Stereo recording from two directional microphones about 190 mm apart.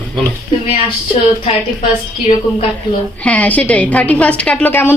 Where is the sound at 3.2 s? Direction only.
5° left (ahead or behind).